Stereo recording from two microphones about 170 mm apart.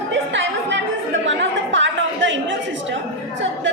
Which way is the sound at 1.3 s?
90° right.